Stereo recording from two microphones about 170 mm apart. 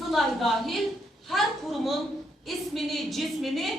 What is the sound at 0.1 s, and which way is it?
A woman's voice, centre (ahead or behind).